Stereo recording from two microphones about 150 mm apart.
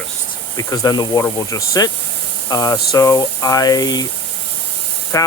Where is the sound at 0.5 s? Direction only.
25° left (ahead or behind).